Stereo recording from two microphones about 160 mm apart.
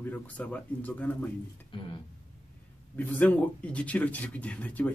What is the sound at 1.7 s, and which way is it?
Speech, 30° left (ahead or behind).